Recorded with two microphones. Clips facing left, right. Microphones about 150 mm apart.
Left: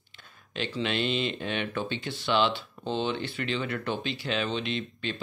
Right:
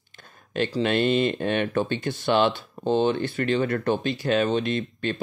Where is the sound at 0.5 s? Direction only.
45° right (ahead or behind).